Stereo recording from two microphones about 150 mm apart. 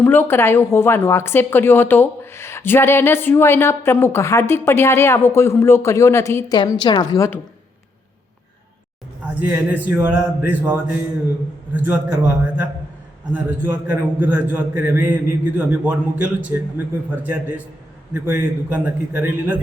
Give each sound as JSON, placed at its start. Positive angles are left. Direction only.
{"t": 0.0, "sound": "speech", "side_deg": 15}
{"t": 6.6, "sound": "a woman's voice", "side_deg": 30}
{"t": 9.2, "sound": "a man's voice", "side_deg": -10}
{"t": 13.3, "sound": "a man's voice", "side_deg": -15}